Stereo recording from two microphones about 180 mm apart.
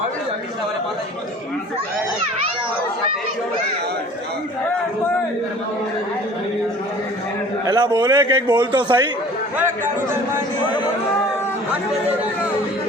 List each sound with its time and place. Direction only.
7.6 s a man's voice: 25° right (ahead or behind)